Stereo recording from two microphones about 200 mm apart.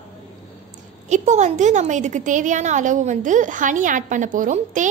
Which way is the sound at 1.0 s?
35° right (ahead or behind).